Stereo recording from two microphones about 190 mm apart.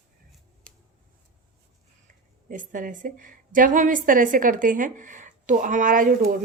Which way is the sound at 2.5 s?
45° right (ahead or behind).